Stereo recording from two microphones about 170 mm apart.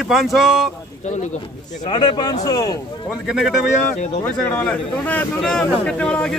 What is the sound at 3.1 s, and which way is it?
Speech, 5° right (ahead or behind).